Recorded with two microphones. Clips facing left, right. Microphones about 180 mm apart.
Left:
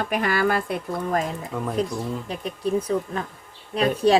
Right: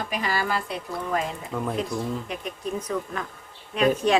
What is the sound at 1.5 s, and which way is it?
Speech, centre (ahead or behind).